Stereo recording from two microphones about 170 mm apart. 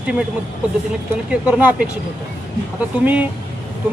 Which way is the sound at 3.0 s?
10° right (ahead or behind).